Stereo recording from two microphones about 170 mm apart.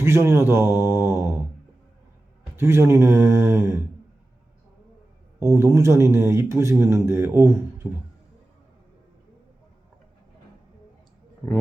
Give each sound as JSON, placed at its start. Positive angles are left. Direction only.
{"t": 0.0, "sound": "speech", "side_deg": -15}
{"t": 2.6, "sound": "speech", "side_deg": -15}
{"t": 5.4, "sound": "speech", "side_deg": -20}